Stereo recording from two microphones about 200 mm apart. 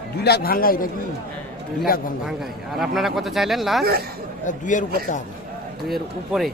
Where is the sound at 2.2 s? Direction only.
Centre (ahead or behind).